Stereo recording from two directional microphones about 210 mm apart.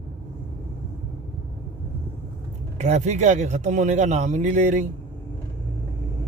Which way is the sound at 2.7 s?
35° right (ahead or behind).